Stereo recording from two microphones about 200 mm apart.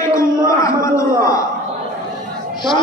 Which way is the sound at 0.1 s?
15° left (ahead or behind).